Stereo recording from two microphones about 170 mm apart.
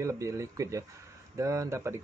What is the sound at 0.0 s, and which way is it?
Speech, 20° right (ahead or behind).